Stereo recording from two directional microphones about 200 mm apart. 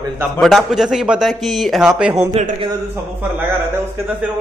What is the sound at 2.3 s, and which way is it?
Speech, 30° right (ahead or behind).